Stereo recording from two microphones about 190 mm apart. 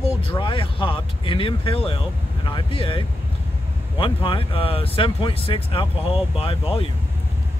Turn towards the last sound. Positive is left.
turn(degrees=30)  # may be behind; listen again after turning